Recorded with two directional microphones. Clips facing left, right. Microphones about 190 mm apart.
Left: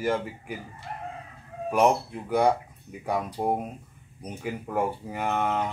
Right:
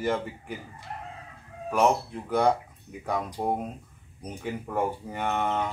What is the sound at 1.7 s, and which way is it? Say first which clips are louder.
Speech: left 1 dB; 15° left (ahead or behind).